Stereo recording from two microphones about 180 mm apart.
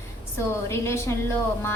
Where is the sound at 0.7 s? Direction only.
15° left (ahead or behind).